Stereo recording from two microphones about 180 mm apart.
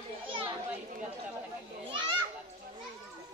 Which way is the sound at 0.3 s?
30° right (ahead or behind).